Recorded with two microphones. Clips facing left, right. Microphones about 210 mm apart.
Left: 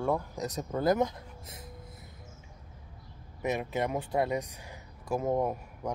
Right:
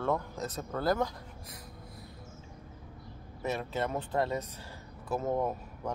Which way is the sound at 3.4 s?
15° left (ahead or behind).